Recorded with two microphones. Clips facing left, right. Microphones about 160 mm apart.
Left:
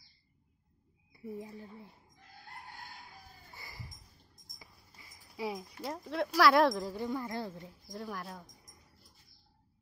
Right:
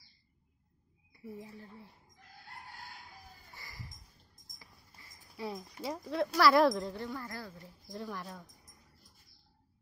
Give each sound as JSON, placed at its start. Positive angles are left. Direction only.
{"t": 1.4, "sound": "speech", "side_deg": 15}
{"t": 3.5, "sound": "a sound", "side_deg": 20}
{"t": 5.8, "sound": "speech", "side_deg": 0}
{"t": 7.0, "sound": "speech", "side_deg": 20}
{"t": 7.9, "sound": "speech", "side_deg": 0}